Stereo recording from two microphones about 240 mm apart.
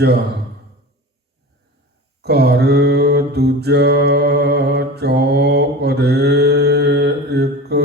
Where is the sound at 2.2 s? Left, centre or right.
Right.